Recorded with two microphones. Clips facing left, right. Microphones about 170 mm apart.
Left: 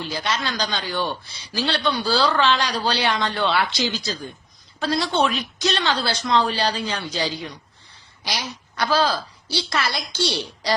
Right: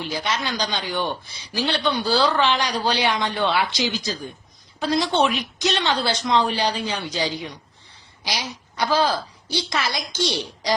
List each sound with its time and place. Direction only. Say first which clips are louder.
0.0 s a woman's voice: even; 15° right (ahead or behind)